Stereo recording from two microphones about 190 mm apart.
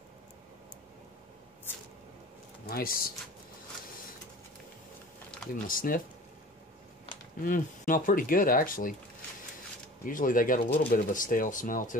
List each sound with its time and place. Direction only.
2.7 s speech: 50° left (ahead or behind)
5.5 s speech: 45° left (ahead or behind)
7.4 s speech: 45° left (ahead or behind)
10.0 s speech: 45° left (ahead or behind)